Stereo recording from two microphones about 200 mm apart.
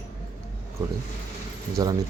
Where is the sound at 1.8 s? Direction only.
20° right (ahead or behind).